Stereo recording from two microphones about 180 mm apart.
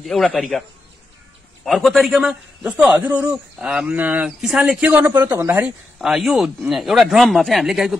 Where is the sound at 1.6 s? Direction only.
Centre (ahead or behind).